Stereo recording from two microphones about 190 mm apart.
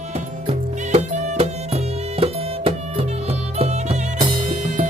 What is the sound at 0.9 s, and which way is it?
Music, 35° right (ahead or behind).